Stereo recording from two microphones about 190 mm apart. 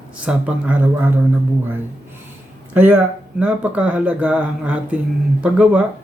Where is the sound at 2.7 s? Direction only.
10° right (ahead or behind).